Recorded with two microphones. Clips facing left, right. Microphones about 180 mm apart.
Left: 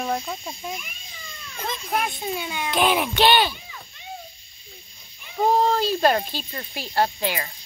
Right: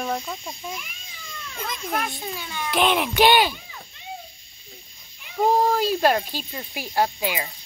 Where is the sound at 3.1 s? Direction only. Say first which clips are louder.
Right 4 dB; 10° right (ahead or behind).